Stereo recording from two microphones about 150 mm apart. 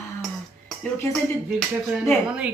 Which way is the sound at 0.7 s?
Centre (ahead or behind).